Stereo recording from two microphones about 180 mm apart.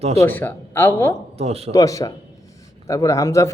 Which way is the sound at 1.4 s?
35° right (ahead or behind).